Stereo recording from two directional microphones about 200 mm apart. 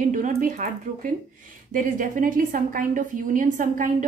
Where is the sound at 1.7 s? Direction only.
40° right (ahead or behind).